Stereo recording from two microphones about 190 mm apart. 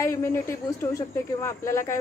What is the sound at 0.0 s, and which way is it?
Speech, 15° left (ahead or behind).